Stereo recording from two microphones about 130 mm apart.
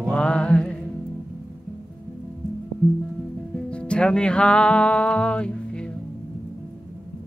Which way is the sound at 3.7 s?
10° left (ahead or behind).